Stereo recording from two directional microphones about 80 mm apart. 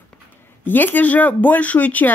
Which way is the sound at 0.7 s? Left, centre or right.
Left.